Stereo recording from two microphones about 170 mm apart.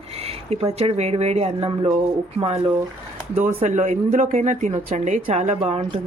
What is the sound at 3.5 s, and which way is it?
A woman's voice, 45° right (ahead or behind).